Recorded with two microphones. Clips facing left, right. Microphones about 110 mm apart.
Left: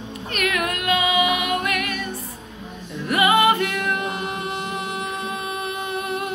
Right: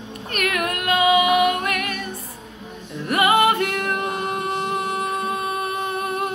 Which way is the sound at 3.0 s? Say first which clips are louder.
Even; 50° right (ahead or behind).